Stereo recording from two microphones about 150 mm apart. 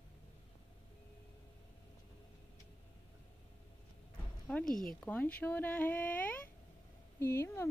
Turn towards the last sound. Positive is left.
turn(degrees=15)  # may be behind; listen again after turning